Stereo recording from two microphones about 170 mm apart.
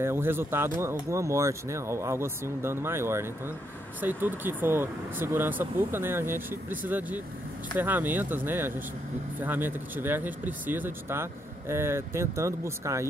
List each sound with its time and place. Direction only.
0.0 s speech: 15° right (ahead or behind)